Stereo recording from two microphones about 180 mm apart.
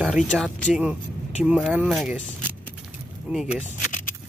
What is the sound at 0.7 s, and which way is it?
Speech, 5° right (ahead or behind).